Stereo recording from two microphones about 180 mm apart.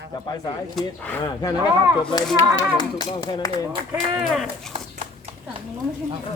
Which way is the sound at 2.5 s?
25° left (ahead or behind).